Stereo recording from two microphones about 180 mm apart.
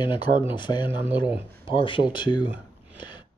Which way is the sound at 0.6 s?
25° left (ahead or behind).